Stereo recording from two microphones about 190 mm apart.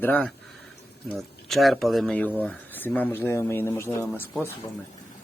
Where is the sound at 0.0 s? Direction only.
5° left (ahead or behind).